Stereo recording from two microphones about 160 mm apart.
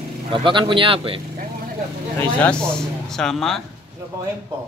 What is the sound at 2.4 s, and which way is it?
Speech, 5° left (ahead or behind).